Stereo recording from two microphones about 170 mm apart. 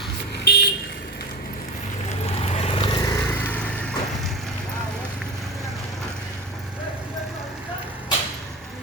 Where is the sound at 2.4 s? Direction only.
35° left (ahead or behind); by 3.5 s 20° left (ahead or behind).